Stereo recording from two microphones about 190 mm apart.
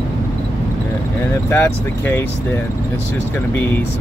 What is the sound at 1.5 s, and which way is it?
Speech, 10° left (ahead or behind).